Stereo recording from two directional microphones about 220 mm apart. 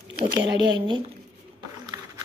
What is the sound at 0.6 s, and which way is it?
Speech, 20° right (ahead or behind).